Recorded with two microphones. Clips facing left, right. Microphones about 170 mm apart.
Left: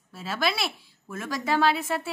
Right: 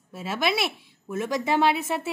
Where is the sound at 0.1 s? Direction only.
20° right (ahead or behind).